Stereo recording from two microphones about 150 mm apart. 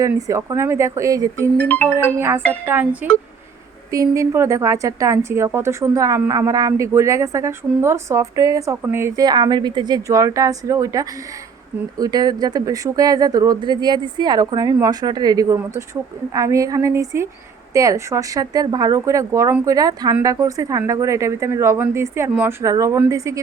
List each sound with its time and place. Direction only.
0.0 s a woman's voice: 20° right (ahead or behind)
1.6 s music: 10° left (ahead or behind)
1.9 s a woman's voice: 15° right (ahead or behind)